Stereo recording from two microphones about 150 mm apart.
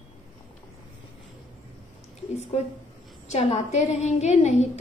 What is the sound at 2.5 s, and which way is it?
A woman's voice, 50° left (ahead or behind).